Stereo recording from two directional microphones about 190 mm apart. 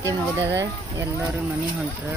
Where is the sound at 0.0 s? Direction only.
15° right (ahead or behind).